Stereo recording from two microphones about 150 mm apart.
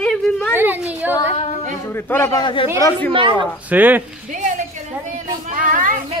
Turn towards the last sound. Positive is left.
turn(degrees=-65)  # may be behind; listen again after turning